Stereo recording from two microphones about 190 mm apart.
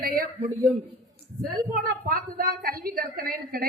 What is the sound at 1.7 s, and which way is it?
A woman's voice, 50° right (ahead or behind).